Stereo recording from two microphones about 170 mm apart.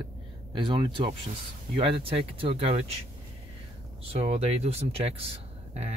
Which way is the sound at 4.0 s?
35° right (ahead or behind).